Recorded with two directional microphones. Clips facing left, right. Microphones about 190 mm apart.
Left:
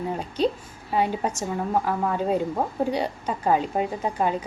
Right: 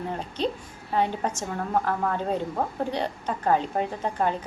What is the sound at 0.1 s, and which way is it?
A woman's voice, 10° left (ahead or behind).